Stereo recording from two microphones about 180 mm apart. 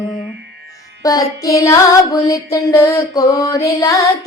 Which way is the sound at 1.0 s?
20° left (ahead or behind).